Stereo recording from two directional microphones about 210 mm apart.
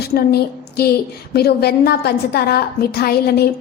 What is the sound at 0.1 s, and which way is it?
A woman's voice, 50° left (ahead or behind).